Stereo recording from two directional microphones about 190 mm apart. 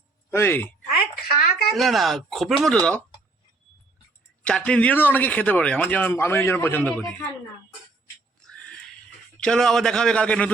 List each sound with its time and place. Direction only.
0.3 s speech: 10° left (ahead or behind)
1.3 s a sound: 55° left (ahead or behind)
1.7 s speech: centre (ahead or behind)
4.4 s speech: 5° left (ahead or behind)
8.4 s a sound: 5° left (ahead or behind)
9.4 s speech: 5° left (ahead or behind)